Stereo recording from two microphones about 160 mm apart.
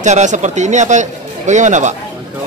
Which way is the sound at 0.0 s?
50° right (ahead or behind).